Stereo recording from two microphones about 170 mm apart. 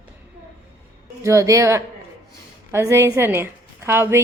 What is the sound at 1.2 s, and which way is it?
A woman's voice, 20° right (ahead or behind).